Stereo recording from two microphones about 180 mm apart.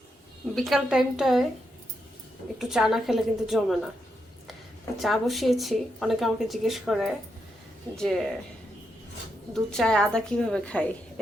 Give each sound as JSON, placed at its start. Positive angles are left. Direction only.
{"t": 0.5, "sound": "speech", "side_deg": 0}
{"t": 2.6, "sound": "speech", "side_deg": -5}
{"t": 4.9, "sound": "speech", "side_deg": 0}
{"t": 9.5, "sound": "speech", "side_deg": 5}